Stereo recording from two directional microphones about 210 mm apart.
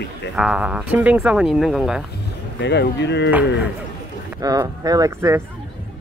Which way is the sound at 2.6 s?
55° left (ahead or behind).